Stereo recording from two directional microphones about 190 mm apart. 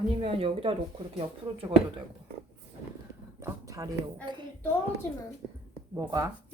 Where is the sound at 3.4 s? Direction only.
15° right (ahead or behind).